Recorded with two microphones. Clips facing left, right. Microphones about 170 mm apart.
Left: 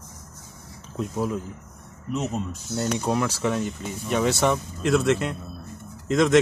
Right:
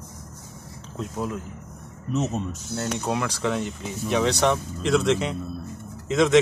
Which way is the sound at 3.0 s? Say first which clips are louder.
Even; 5° left (ahead or behind).